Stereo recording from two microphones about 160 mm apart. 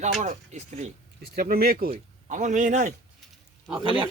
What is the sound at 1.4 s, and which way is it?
Speech, 70° right (ahead or behind).